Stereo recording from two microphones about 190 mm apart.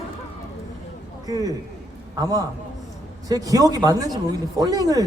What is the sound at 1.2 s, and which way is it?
A man's voice, 20° right (ahead or behind).